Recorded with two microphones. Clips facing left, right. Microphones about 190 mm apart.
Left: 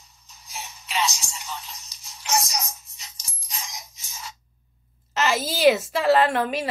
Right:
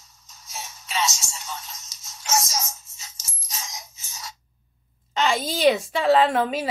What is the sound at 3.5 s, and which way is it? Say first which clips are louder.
Music: even; 15° left (ahead or behind).